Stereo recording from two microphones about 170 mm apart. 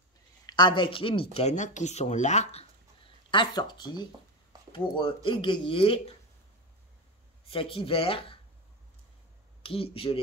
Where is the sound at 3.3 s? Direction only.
25° left (ahead or behind).